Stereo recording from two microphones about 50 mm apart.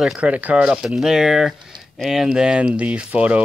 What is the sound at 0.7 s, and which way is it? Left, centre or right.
Speech, centre.